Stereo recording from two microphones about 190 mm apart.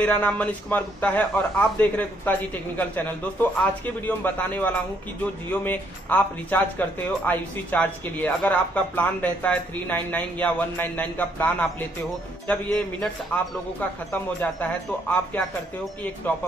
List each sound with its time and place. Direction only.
0.0 s a man's voice: 10° left (ahead or behind)